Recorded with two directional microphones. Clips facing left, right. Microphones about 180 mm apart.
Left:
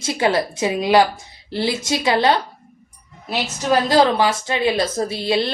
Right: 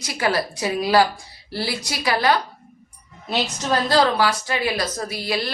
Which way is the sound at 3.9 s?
20° left (ahead or behind).